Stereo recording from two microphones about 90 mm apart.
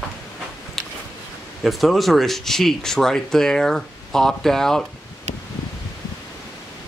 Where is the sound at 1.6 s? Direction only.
Centre (ahead or behind).